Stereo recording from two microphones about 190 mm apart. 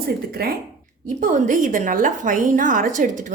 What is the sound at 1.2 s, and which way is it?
A woman's voice, 45° right (ahead or behind).